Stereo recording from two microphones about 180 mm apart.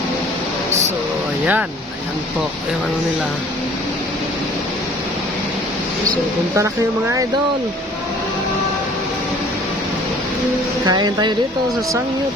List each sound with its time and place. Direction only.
10.8 s speech: 25° right (ahead or behind)